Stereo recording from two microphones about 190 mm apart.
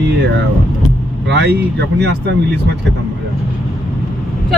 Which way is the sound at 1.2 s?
65° right (ahead or behind).